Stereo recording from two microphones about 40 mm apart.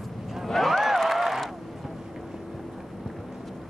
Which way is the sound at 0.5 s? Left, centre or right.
Centre.